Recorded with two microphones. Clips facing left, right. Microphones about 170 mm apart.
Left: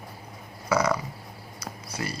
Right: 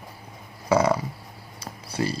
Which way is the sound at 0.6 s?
30° right (ahead or behind).